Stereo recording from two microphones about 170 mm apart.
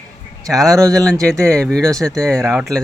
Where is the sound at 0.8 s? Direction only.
20° right (ahead or behind).